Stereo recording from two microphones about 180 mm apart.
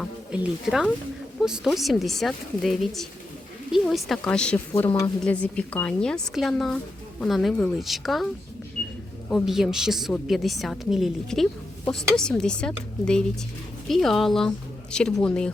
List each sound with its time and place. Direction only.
0.0 s a woman's voice: 5° right (ahead or behind)
4.9 s a woman's voice: 20° left (ahead or behind)
5.2 s a woman's voice: 5° left (ahead or behind)
9.3 s a woman's voice: centre (ahead or behind)